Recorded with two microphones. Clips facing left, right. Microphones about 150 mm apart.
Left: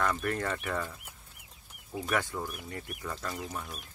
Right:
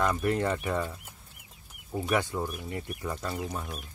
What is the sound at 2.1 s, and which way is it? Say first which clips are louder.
Speech: right 4 dB; 15° right (ahead or behind).